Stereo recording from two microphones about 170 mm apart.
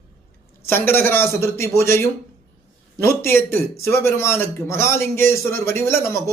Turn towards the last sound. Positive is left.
turn(degrees=15)  # may be behind; listen again after turning